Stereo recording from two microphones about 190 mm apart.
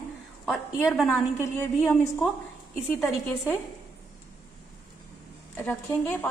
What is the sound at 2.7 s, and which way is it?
Speech, centre (ahead or behind).